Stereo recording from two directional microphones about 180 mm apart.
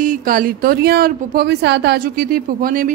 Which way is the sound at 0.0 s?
50° right (ahead or behind).